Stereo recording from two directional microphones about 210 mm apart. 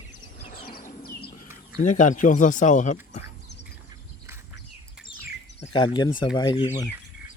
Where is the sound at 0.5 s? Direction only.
45° left (ahead or behind).